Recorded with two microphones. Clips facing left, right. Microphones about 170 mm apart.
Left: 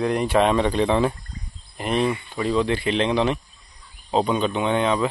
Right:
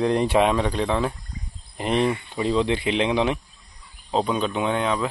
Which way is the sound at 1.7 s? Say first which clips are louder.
Even; 20° right (ahead or behind).